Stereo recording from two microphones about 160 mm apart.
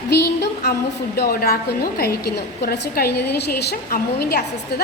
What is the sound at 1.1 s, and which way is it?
A woman's voice, 70° left (ahead or behind).